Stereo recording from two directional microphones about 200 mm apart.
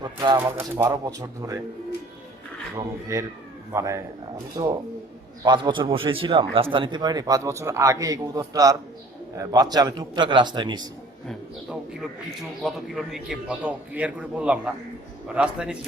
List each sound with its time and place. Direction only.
0.0 s speech: 20° right (ahead or behind)
0.3 s speech: 10° right (ahead or behind)
2.7 s a man's voice: 15° right (ahead or behind)
11.3 s a man's voice: centre (ahead or behind)